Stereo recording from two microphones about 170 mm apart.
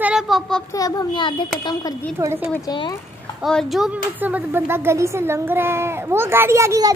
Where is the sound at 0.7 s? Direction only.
20° left (ahead or behind).